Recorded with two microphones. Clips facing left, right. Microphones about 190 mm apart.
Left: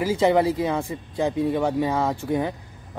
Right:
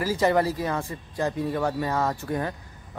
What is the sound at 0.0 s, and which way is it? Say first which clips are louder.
A man's voice: left 3 dB; 20° left (ahead or behind).